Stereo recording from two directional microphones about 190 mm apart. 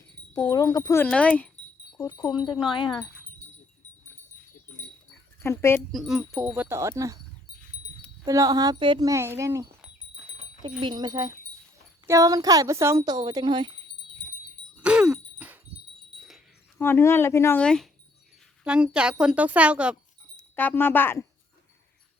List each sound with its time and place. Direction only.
0.5 s speech: 20° left (ahead or behind)
1.1 s speech: 5° left (ahead or behind)
1.9 s wind chime: 20° left (ahead or behind)
2.6 s speech: 25° left (ahead or behind)
5.4 s speech: 10° left (ahead or behind)
5.9 s speech: centre (ahead or behind)
8.2 s speech: 20° right (ahead or behind)
10.8 s speech: 25° right (ahead or behind)
14.8 s groan: 5° right (ahead or behind)
16.2 s wind chime: centre (ahead or behind)
16.8 s speech: 10° left (ahead or behind); by 20.0 s 5° right (ahead or behind)
20.6 s speech: 10° left (ahead or behind)